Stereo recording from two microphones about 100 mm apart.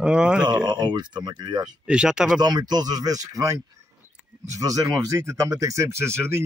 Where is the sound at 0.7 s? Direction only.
50° right (ahead or behind).